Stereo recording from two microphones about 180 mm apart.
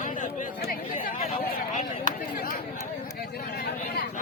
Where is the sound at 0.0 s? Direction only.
45° left (ahead or behind).